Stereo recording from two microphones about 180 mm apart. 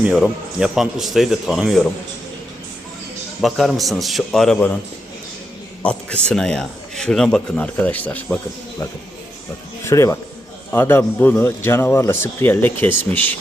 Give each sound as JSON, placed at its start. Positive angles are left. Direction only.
{"t": 0.0, "sound": "speech", "side_deg": -5}
{"t": 3.4, "sound": "speech", "side_deg": 0}
{"t": 5.8, "sound": "a man's voice", "side_deg": 5}
{"t": 9.8, "sound": "a man's voice", "side_deg": 15}